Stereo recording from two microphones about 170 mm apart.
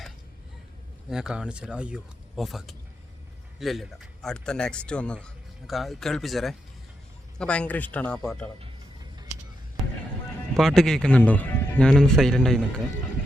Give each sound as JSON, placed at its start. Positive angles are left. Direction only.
{"t": 1.1, "sound": "speech", "side_deg": -5}
{"t": 10.6, "sound": "speech", "side_deg": 5}